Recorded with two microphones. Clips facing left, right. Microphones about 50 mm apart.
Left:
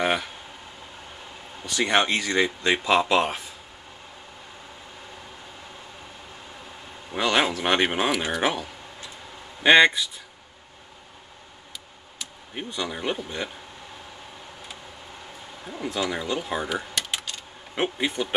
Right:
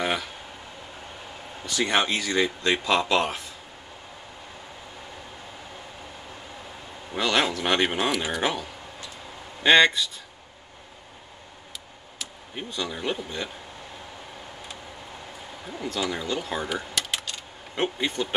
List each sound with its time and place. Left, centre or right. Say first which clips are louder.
0.0 s a sound: left 3 dB; centre
1.9 s speech: left 3 dB; centre
7.2 s speech: left 1 dB; centre
9.6 s speech: left 2 dB; centre
12.5 s speech: left 1 dB; centre
15.6 s speech: left 1 dB; centre
17.0 s typing: even; centre
17.7 s speech: left 1 dB; centre